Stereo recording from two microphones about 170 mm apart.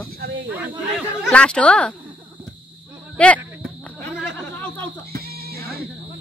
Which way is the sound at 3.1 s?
5° left (ahead or behind).